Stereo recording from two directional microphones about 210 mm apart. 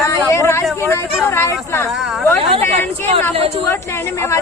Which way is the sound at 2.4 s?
25° right (ahead or behind).